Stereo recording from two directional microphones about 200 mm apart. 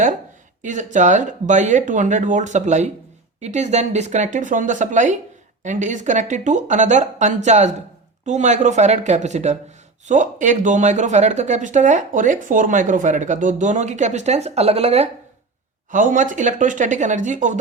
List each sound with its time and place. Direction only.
0.6 s speech: 40° right (ahead or behind)